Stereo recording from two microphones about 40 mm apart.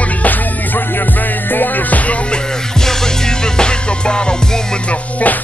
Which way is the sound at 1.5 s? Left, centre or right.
Left.